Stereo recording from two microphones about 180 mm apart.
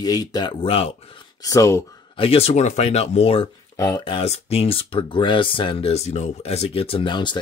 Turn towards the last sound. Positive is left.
turn(degrees=25)  # may be behind; listen again after turning